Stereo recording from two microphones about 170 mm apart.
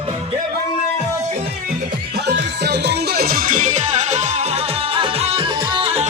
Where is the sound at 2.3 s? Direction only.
85° right; by 6.0 s 30° right (ahead or behind).